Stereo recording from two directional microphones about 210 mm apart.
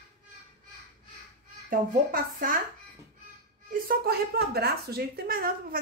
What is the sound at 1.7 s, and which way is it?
Speech, 40° right (ahead or behind).